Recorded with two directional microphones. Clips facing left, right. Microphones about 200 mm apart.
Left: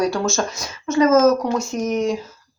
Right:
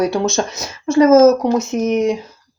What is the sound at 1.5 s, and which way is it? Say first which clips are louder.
Speech: right 5 dB; 20° right (ahead or behind).